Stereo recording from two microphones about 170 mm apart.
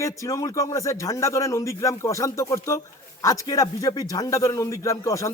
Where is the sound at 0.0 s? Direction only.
20° left (ahead or behind).